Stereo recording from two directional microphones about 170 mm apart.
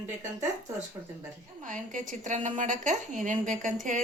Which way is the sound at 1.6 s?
50° right (ahead or behind).